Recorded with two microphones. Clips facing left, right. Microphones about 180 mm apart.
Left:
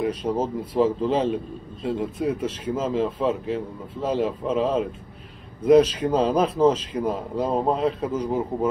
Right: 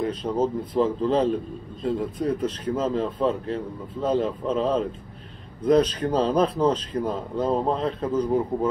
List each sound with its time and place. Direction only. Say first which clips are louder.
0.0 s speech: even; 10° left (ahead or behind)